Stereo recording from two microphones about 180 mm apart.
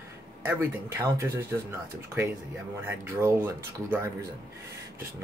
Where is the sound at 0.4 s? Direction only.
15° right (ahead or behind).